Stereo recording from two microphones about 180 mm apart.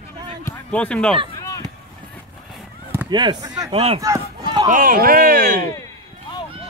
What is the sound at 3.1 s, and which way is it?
Speech, 25° right (ahead or behind).